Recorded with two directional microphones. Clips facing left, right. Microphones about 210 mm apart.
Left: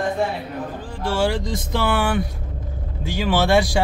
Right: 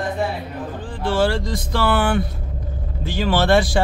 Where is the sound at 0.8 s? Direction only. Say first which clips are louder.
Right 3 dB; 10° left (ahead or behind).